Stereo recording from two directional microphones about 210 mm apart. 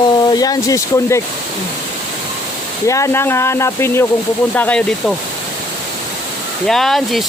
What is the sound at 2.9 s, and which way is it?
Speech, 15° left (ahead or behind).